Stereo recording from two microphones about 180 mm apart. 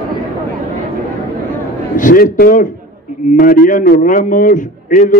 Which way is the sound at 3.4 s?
50° left (ahead or behind).